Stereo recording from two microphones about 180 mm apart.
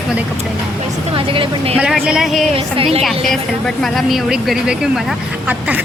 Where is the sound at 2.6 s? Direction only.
30° right (ahead or behind).